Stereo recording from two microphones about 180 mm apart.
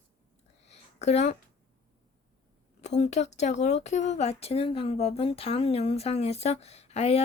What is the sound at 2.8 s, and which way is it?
Speech, 40° left (ahead or behind).